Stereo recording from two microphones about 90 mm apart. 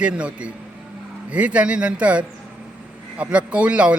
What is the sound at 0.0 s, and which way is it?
Speech, 15° right (ahead or behind).